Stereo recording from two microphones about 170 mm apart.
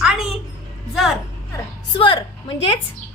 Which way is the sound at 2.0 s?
30° left (ahead or behind).